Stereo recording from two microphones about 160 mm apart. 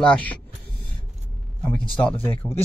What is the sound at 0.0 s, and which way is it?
Speech, 5° left (ahead or behind).